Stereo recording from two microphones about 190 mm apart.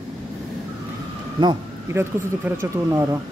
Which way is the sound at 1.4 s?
15° right (ahead or behind).